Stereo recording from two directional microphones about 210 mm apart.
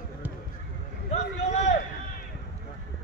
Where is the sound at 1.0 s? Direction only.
35° left (ahead or behind).